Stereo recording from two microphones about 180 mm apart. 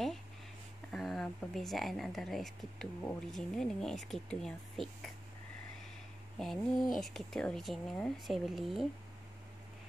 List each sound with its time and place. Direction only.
0.9 s speech: centre (ahead or behind)
6.3 s speech: centre (ahead or behind)